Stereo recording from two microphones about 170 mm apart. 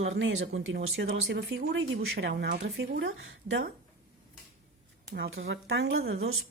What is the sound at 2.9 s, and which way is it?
Speech, 90° right.